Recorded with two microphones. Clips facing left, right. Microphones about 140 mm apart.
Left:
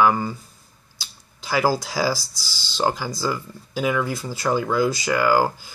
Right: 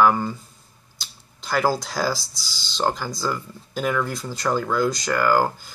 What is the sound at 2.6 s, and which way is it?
Speech, 5° left (ahead or behind).